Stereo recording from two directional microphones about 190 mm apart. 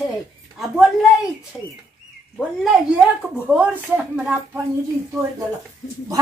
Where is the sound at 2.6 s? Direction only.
Centre (ahead or behind).